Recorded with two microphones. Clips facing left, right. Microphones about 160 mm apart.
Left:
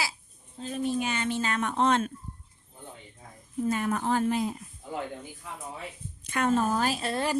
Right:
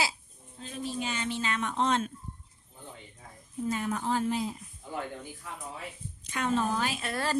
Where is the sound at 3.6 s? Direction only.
55° left (ahead or behind).